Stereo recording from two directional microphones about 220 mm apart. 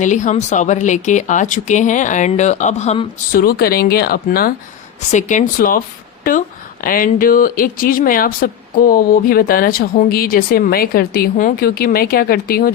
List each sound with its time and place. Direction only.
0.0 s speech: 35° left (ahead or behind)
3.3 s speech: 45° left (ahead or behind)
6.8 s speech: 40° left (ahead or behind)